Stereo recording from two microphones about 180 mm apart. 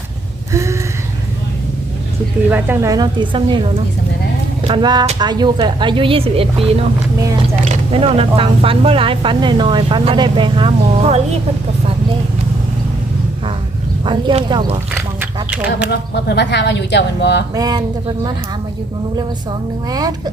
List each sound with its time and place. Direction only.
0.5 s a sound: 15° right (ahead or behind)
2.5 s speech: 15° right (ahead or behind); by 11.2 s 30° right (ahead or behind)
14.0 s speech: 25° right (ahead or behind)
15.4 s speech: 5° right (ahead or behind)
15.9 s speech: 70° left (ahead or behind)
17.5 s speech: 20° right (ahead or behind)
19.9 s speech: 20° right (ahead or behind)